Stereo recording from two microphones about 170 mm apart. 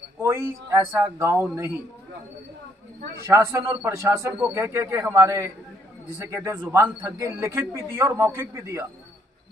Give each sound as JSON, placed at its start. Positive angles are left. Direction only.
{"t": 0.2, "sound": "a man's voice", "side_deg": -15}
{"t": 3.3, "sound": "a man's voice", "side_deg": -15}